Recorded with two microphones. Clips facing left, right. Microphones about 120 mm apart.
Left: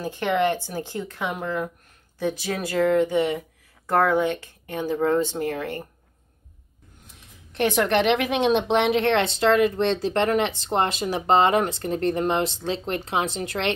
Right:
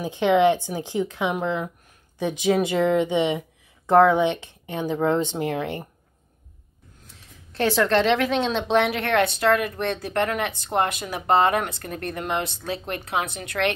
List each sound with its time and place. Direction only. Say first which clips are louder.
0.0 s speech: right 4 dB; 15° right (ahead or behind)
7.5 s a woman's voice: right 1 dB; 20° left (ahead or behind)